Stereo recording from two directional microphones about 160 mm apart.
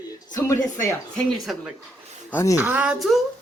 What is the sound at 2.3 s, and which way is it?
Speech, 15° left (ahead or behind).